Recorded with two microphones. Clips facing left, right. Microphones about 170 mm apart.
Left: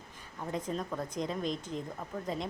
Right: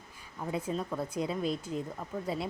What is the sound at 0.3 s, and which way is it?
Speech, 10° right (ahead or behind).